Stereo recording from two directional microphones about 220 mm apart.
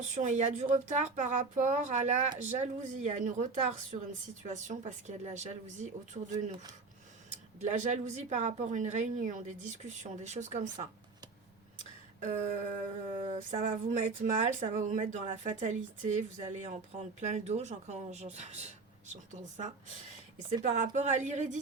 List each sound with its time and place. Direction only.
0.0 s speech: 35° right (ahead or behind)
6.3 s speech: 15° right (ahead or behind)
7.6 s speech: 30° right (ahead or behind)
13.1 s speech: 30° right (ahead or behind)